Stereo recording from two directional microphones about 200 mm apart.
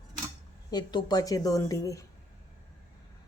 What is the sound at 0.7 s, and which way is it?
A woman's voice, 20° left (ahead or behind).